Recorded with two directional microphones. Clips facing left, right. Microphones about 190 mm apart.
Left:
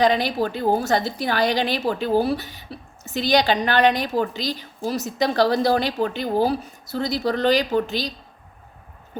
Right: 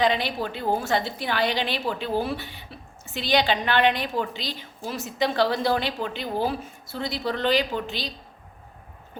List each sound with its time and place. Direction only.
0.0 s a woman's voice: 40° left (ahead or behind)